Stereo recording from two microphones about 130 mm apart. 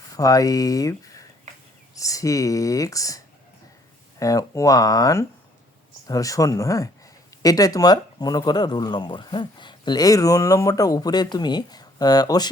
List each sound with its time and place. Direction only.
0.1 s speech: 25° left (ahead or behind)
2.0 s speech: 25° left (ahead or behind)
4.2 s speech: 25° left (ahead or behind)